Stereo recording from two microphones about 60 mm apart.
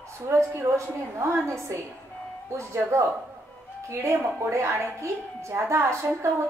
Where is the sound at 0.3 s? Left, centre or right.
Right.